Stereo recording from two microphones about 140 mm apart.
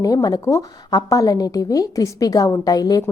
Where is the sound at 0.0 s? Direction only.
25° left (ahead or behind).